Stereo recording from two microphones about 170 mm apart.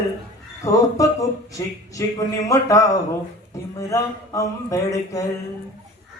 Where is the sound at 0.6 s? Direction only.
20° left (ahead or behind).